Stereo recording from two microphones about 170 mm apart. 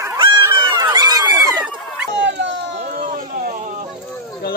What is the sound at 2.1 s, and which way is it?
Cat, 90° right.